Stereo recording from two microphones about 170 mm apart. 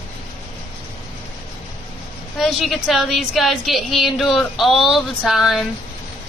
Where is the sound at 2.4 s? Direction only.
Centre (ahead or behind).